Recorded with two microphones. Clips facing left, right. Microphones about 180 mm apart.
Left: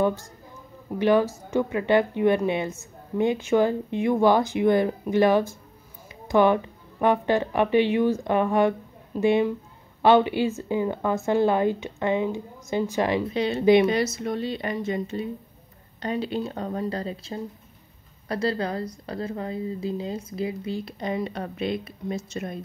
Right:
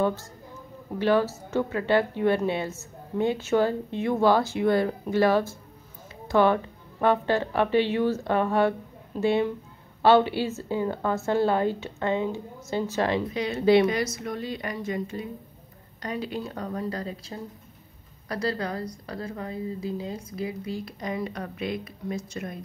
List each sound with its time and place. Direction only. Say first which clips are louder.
0.0 s a woman's voice: left 2 dB; 15° left (ahead or behind)
13.3 s a woman's voice: left 2 dB; 25° left (ahead or behind)